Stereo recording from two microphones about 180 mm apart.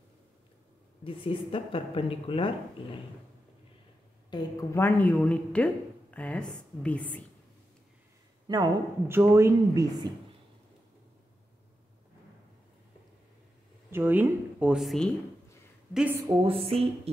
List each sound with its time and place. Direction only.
1.0 s speech: 30° left (ahead or behind)
2.8 s a sound: 30° left (ahead or behind)
4.3 s a woman's voice: 20° left (ahead or behind)
8.5 s a woman's voice: 20° right (ahead or behind)
13.8 s a woman's voice: 10° right (ahead or behind)
16.3 s speech: 30° right (ahead or behind)